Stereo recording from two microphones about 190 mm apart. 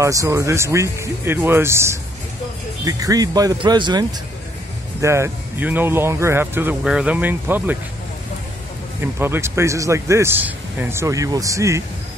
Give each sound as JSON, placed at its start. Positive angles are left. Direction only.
{"t": 0.0, "sound": "a man's voice", "side_deg": -15}
{"t": 5.0, "sound": "a man's voice", "side_deg": -15}
{"t": 9.0, "sound": "a man's voice", "side_deg": -10}